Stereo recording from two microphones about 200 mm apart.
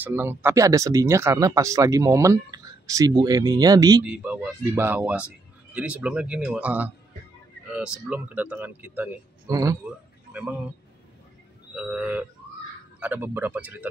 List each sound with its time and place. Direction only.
0.0 s speech: 10° right (ahead or behind)
4.0 s speech: 5° right (ahead or behind)
11.7 s speech: 5° right (ahead or behind)